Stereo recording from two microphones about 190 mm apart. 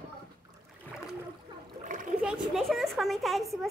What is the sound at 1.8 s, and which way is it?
Splash, 45° right (ahead or behind).